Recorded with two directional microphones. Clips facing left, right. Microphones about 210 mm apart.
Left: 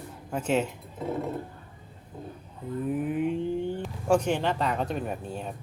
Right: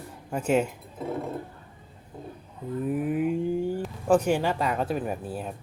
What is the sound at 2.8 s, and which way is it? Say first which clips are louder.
Speech: right 2 dB; 5° right (ahead or behind).